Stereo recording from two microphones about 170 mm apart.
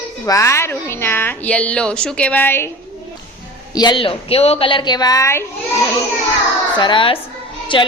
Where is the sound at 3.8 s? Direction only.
25° left (ahead or behind).